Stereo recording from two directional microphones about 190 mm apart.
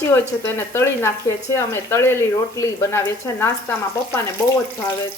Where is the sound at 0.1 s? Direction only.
15° left (ahead or behind).